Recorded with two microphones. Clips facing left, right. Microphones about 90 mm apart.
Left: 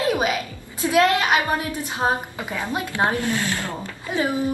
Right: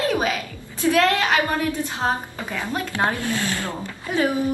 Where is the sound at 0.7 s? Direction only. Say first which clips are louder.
Even; 15° left (ahead or behind).